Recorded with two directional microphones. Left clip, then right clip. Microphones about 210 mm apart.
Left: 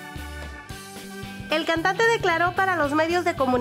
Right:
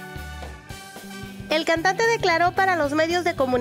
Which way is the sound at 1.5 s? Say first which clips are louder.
Right 2 dB; 25° right (ahead or behind).